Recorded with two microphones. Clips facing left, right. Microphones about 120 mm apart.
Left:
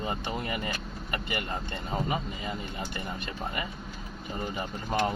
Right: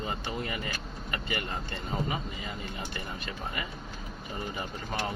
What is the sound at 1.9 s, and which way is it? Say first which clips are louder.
Speech: left 2 dB; 30° left (ahead or behind).